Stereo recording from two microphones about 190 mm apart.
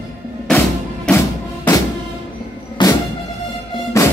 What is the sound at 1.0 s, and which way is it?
Music, 10° left (ahead or behind).